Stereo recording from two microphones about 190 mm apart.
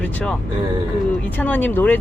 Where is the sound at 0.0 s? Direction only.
5° left (ahead or behind).